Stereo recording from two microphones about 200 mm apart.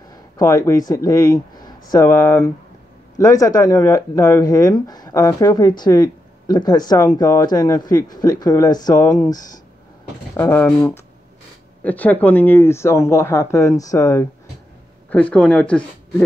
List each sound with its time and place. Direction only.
0.4 s speech: 15° left (ahead or behind)
11.8 s speech: 10° left (ahead or behind)